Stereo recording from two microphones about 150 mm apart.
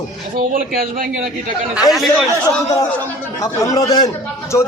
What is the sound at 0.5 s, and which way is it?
Speech, 75° right (ahead or behind).